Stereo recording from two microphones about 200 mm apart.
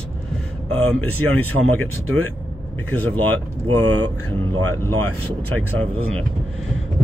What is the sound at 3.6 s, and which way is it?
Speech, 90° right.